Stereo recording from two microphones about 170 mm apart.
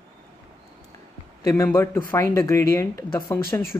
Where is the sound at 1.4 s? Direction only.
20° left (ahead or behind).